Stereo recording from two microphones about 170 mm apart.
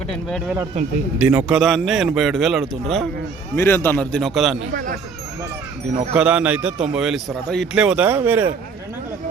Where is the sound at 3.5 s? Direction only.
15° left (ahead or behind).